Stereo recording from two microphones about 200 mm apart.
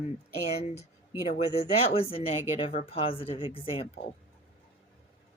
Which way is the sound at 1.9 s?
30° left (ahead or behind).